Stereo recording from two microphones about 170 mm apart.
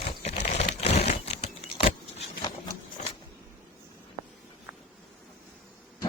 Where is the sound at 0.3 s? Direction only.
40° left (ahead or behind).